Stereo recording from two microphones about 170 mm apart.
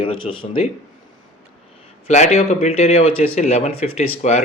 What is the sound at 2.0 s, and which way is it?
Speech, 40° left (ahead or behind).